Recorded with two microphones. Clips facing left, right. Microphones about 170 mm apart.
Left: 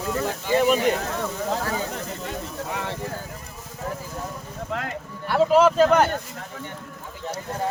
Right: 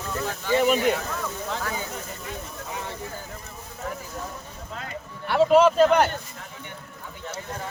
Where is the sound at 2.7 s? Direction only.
70° left (ahead or behind).